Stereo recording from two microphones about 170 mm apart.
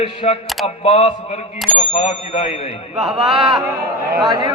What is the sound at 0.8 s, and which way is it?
A man's voice, 35° left (ahead or behind).